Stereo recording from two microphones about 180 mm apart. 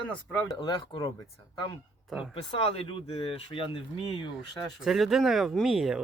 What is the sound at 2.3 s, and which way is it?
Speech, 30° left (ahead or behind).